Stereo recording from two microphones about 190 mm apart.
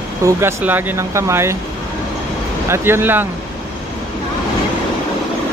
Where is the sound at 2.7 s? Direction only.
10° right (ahead or behind).